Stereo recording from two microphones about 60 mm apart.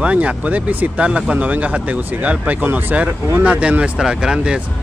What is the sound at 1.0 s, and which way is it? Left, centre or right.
Speech, centre.